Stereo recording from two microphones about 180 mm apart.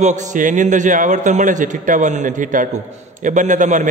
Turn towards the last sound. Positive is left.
turn(degrees=-45)  # may be behind; listen again after turning